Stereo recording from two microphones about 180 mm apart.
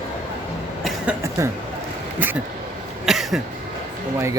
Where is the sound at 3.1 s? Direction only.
Centre (ahead or behind).